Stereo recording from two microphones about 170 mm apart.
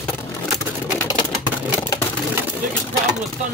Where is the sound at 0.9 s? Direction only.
25° left (ahead or behind).